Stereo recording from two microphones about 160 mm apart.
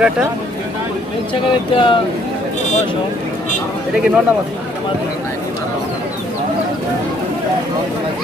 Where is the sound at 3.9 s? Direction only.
5° right (ahead or behind).